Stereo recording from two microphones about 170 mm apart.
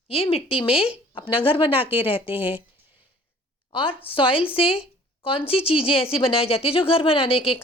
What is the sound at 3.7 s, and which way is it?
A woman's voice, 30° left (ahead or behind).